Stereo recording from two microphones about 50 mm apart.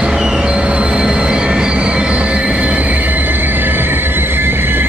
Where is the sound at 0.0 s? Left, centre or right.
Centre.